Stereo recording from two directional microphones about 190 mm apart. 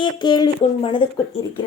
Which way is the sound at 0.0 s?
25° left (ahead or behind).